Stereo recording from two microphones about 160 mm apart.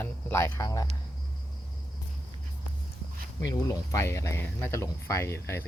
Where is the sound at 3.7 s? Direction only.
20° left (ahead or behind).